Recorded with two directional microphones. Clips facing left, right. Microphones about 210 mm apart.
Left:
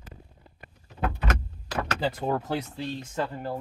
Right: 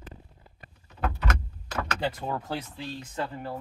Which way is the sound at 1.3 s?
35° left (ahead or behind).